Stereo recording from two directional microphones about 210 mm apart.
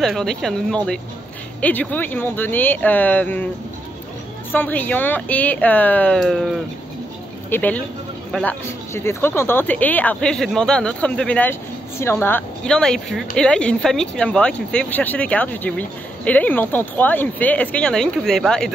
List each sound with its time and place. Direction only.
0.0 s speech: centre (ahead or behind)
4.5 s speech: 10° left (ahead or behind)